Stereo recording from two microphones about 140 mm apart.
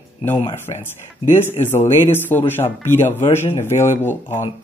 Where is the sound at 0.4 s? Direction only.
40° left (ahead or behind).